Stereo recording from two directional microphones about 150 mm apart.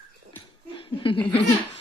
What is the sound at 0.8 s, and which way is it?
Chuckle, 35° left (ahead or behind).